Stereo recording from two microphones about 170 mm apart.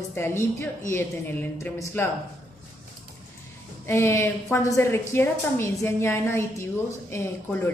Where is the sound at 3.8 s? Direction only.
15° left (ahead or behind).